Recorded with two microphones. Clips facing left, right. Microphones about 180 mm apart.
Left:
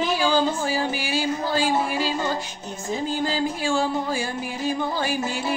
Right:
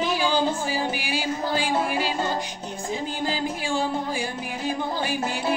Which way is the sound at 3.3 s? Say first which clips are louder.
Left 3 dB; 15° right (ahead or behind).